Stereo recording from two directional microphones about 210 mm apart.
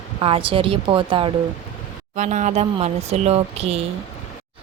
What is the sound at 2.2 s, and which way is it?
Speech, 35° right (ahead or behind).